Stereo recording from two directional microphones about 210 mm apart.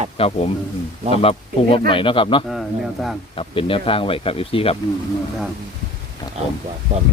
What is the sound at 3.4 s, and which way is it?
Speech, 25° left (ahead or behind).